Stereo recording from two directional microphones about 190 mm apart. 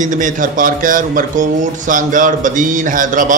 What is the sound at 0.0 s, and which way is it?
Speech, 40° right (ahead or behind).